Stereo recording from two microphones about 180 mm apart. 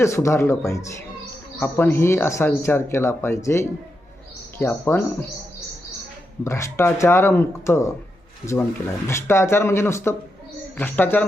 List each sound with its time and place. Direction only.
0.0 s speech: 15° left (ahead or behind)
6.4 s speech: 15° left (ahead or behind)
9.0 s speech: 15° left (ahead or behind)